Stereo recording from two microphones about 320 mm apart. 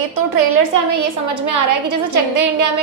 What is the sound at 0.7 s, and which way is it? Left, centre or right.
A woman's voice, right.